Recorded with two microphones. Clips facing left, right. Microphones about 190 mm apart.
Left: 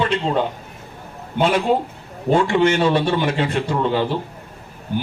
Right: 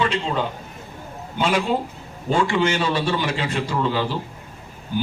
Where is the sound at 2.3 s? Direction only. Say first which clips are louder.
Left 4 dB; 55° left (ahead or behind).